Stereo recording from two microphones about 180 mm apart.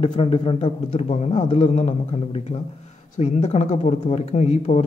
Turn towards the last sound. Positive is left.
turn(degrees=40)  # may be behind; listen again after turning